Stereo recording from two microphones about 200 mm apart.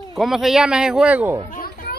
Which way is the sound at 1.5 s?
45° left (ahead or behind).